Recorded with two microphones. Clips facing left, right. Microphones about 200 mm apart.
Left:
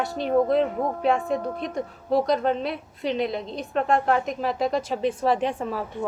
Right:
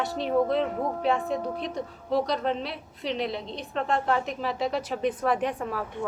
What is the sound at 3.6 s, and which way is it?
Speech, 50° left (ahead or behind).